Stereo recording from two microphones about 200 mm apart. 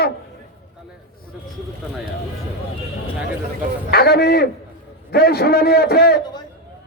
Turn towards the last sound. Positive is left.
turn(degrees=50)  # may be behind; listen again after turning